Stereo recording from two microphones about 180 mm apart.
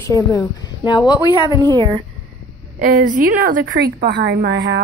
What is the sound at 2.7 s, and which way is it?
A woman's voice, 50° right (ahead or behind).